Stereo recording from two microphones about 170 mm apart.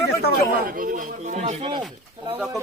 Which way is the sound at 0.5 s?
55° right (ahead or behind).